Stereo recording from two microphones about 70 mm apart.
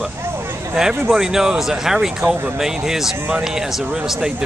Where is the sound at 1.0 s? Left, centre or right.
Centre.